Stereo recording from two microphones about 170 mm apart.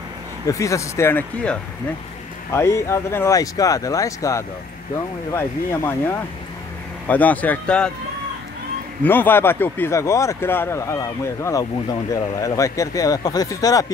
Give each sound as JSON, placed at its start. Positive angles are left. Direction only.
{"t": 0.5, "sound": "speech", "side_deg": 20}
{"t": 9.0, "sound": "speech", "side_deg": 10}